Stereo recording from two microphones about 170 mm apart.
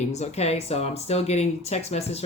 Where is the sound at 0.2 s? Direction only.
40° left (ahead or behind).